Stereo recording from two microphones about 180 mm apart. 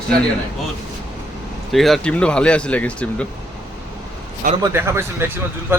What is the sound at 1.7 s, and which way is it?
Speech, centre (ahead or behind).